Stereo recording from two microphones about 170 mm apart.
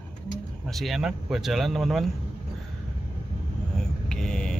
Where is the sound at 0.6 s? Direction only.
Centre (ahead or behind).